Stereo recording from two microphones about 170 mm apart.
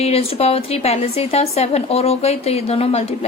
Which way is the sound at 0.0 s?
35° left (ahead or behind).